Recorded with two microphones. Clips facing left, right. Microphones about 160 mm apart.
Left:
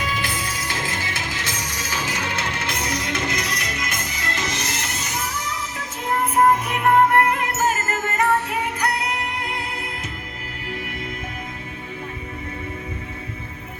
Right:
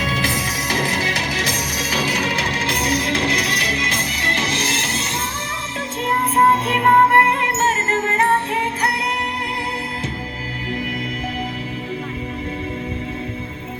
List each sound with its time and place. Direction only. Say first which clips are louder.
0.0 s music: right 4 dB; 40° right (ahead or behind)